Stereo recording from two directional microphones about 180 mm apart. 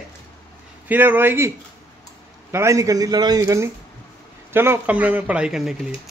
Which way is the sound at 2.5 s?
15° right (ahead or behind).